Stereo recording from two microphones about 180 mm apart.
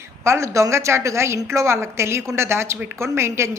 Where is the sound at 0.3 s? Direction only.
15° right (ahead or behind).